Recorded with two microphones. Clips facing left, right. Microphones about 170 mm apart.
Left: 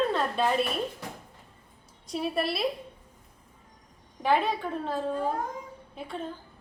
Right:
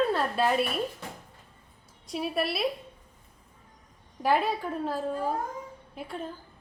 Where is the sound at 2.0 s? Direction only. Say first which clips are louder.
Left 1 dB; centre (ahead or behind).